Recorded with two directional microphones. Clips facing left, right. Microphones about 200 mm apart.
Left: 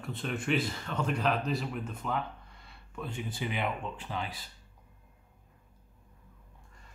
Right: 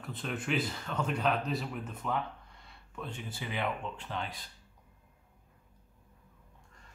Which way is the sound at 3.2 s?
15° left (ahead or behind).